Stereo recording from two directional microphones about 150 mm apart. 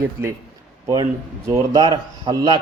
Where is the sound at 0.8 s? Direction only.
25° right (ahead or behind).